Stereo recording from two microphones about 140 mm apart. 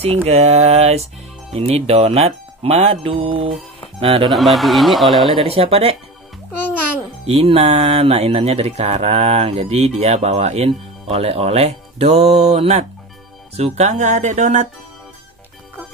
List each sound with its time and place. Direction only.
0.0 s speech: 45° right (ahead or behind)
4.3 s a man's voice: centre (ahead or behind)
5.3 s speech: 45° right (ahead or behind)
6.5 s babbling: 10° left (ahead or behind)
7.2 s speech: 45° right (ahead or behind)